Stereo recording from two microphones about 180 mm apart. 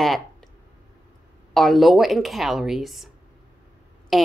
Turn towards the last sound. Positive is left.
turn(degrees=0)  # may be behind; listen again after turning